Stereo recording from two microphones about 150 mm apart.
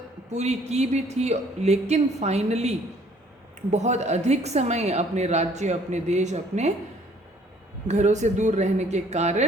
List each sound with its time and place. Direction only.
0.3 s a woman's voice: 50° right (ahead or behind)
7.9 s a woman's voice: 50° right (ahead or behind)